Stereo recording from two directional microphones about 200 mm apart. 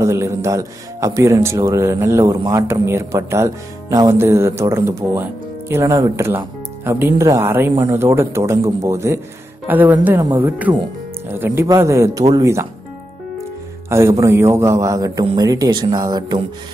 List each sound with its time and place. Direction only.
0.0 s a man's voice: 15° right (ahead or behind)
13.8 s a man's voice: 15° right (ahead or behind)